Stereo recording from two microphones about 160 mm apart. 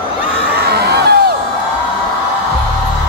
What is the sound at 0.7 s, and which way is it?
Crowd, 90° right.